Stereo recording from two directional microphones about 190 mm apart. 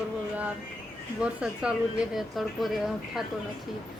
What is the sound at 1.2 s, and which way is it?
A woman's voice, 5° right (ahead or behind).